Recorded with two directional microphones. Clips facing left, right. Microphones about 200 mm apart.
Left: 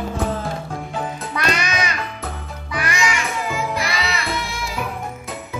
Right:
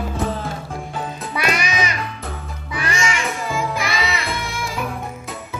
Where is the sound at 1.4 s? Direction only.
10° right (ahead or behind).